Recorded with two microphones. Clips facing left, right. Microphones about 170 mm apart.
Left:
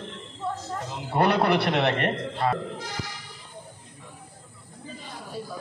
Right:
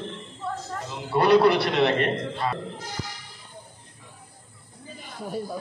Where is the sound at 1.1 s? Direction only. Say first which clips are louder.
Right 4 dB; 55° left (ahead or behind).